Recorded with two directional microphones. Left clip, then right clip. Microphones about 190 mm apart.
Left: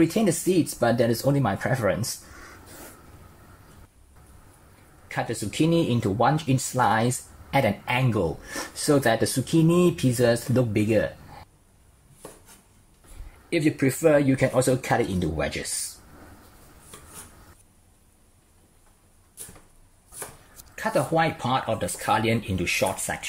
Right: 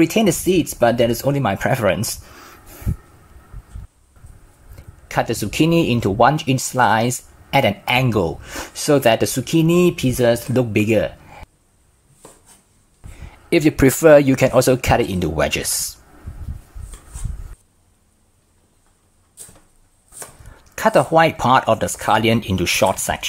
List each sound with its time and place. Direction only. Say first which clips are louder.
0.0 s speech: right 6 dB; 15° right (ahead or behind)
5.0 s speech: right 9 dB; 25° right (ahead or behind)
13.5 s speech: right 9 dB; 30° right (ahead or behind)
20.7 s speech: right 10 dB; 25° right (ahead or behind)